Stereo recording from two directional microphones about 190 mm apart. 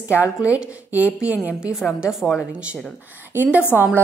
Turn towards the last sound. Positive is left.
turn(degrees=-10)  # may be behind; listen again after turning